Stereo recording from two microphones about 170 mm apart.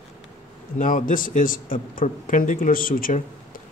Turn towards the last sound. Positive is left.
turn(degrees=55)  # may be behind; listen again after turning